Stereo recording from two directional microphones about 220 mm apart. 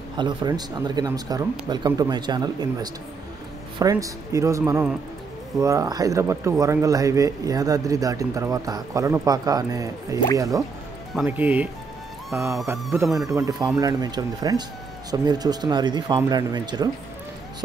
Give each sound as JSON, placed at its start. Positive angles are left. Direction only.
{"t": 0.2, "sound": "speech", "side_deg": -20}